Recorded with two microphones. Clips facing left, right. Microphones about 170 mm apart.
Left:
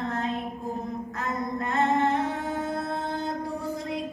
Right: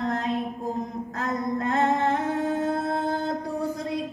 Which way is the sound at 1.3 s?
Centre (ahead or behind).